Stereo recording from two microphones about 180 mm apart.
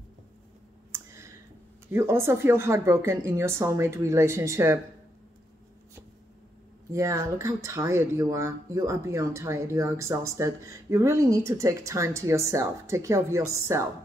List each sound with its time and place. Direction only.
0.9 s a sound: 15° right (ahead or behind)
1.9 s speech: 15° right (ahead or behind)
6.9 s speech: 15° right (ahead or behind)